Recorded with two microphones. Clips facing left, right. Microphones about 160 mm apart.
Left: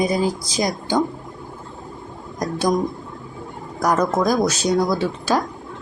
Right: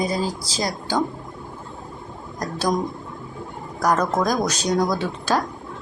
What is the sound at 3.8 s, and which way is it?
Speech, 10° left (ahead or behind).